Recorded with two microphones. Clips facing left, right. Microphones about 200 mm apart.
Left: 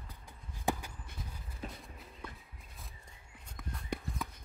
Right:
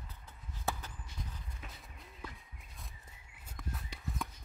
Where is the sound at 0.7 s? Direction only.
10° left (ahead or behind).